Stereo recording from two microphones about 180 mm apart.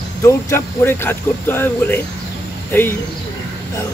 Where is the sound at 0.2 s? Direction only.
15° left (ahead or behind).